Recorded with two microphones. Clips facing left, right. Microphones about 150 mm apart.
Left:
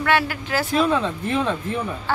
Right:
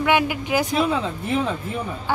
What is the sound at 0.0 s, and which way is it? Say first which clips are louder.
Speech: right 1 dB; 15° right (ahead or behind).